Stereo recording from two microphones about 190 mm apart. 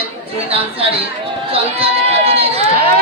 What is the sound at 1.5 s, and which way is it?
Speech, 30° right (ahead or behind).